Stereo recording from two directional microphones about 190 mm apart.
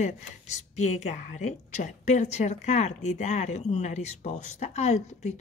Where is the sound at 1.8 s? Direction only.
40° left (ahead or behind).